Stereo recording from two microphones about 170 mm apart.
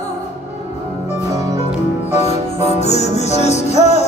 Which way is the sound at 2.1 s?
40° left (ahead or behind).